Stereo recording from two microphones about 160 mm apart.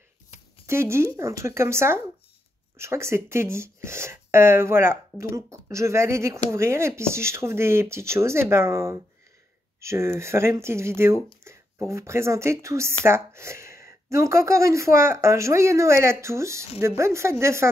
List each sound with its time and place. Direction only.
0.7 s speech: 15° right (ahead or behind)